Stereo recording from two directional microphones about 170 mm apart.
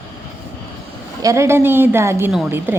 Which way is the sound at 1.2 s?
20° right (ahead or behind).